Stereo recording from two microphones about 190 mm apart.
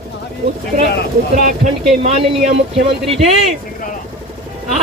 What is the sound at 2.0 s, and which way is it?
Speech, 35° right (ahead or behind).